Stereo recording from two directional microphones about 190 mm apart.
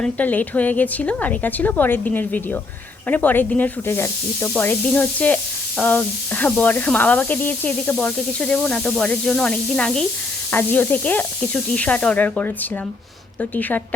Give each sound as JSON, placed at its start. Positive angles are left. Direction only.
{"t": 0.0, "sound": "speech", "side_deg": 10}